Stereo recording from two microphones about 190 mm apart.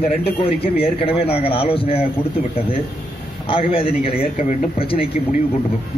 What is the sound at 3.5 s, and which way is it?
A man's voice, 30° left (ahead or behind).